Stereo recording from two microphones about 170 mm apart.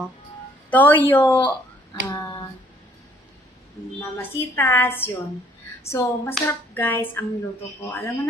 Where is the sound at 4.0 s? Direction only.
15° left (ahead or behind).